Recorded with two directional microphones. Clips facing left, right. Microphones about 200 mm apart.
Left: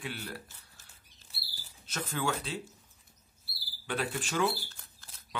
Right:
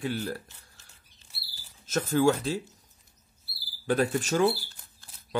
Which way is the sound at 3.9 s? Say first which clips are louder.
Right 8 dB; 45° right (ahead or behind).